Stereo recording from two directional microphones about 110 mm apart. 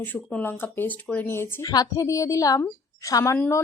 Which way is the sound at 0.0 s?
15° left (ahead or behind).